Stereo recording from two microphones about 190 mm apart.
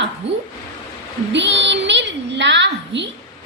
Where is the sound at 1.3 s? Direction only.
70° right (ahead or behind).